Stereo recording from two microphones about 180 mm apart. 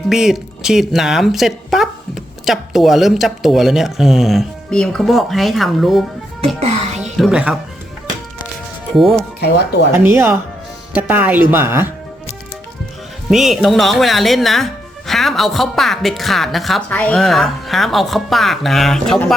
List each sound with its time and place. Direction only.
0.1 s speech: centre (ahead or behind)
6.6 s speech: 40° right (ahead or behind)
7.2 s speech: 5° right (ahead or behind)
9.0 s speech: centre (ahead or behind)
9.4 s speech: 70° left (ahead or behind)
9.9 s speech: 15° right (ahead or behind)
13.3 s speech: centre (ahead or behind)